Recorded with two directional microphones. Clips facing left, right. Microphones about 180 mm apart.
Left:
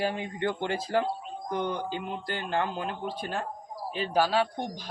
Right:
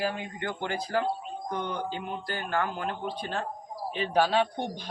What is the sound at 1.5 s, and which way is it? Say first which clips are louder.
A man's voice: left 3 dB; 15° left (ahead or behind).